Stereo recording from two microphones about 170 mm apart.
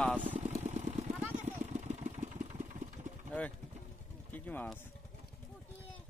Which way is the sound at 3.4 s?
5° left (ahead or behind).